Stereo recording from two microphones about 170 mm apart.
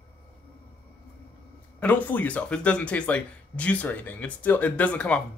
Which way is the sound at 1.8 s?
10° left (ahead or behind).